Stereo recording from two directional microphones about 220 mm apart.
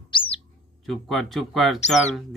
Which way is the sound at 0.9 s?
Centre (ahead or behind).